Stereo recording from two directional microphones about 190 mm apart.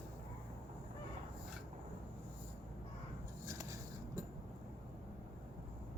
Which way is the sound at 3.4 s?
15° right (ahead or behind).